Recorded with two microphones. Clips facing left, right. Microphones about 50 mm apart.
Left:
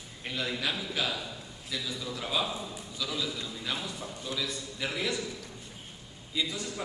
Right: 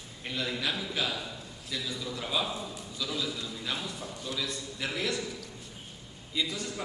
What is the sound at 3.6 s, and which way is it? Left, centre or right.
A man's voice, centre.